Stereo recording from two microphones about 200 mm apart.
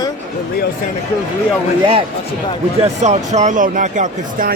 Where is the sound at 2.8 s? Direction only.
35° right (ahead or behind).